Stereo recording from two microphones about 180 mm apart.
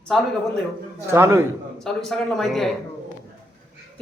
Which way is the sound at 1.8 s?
Centre (ahead or behind).